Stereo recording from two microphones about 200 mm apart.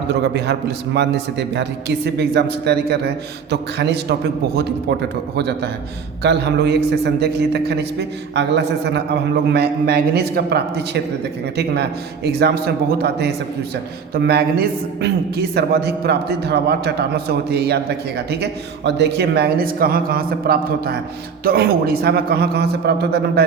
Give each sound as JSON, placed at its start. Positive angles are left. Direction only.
{"t": 0.1, "sound": "a man's voice", "side_deg": -55}
{"t": 5.4, "sound": "a man's voice", "side_deg": -55}
{"t": 18.9, "sound": "a man's voice", "side_deg": -60}